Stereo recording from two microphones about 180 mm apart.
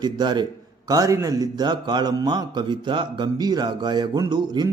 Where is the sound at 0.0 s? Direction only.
25° right (ahead or behind).